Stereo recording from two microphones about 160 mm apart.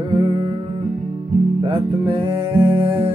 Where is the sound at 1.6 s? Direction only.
35° right (ahead or behind).